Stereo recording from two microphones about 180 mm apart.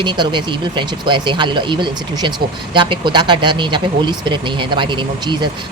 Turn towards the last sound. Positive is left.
turn(degrees=-25)  # may be behind; listen again after turning